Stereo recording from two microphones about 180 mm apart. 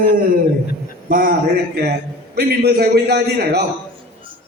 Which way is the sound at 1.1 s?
50° right (ahead or behind).